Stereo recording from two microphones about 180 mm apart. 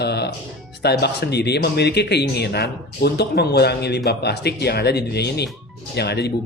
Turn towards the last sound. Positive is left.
turn(degrees=65)  # may be behind; listen again after turning